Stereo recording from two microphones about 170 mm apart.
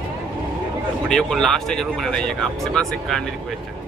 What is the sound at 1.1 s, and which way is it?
Speech, 5° left (ahead or behind).